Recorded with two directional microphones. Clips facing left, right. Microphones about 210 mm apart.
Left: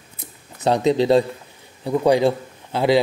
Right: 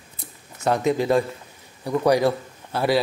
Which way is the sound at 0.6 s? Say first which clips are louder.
Left 3 dB; 30° left (ahead or behind).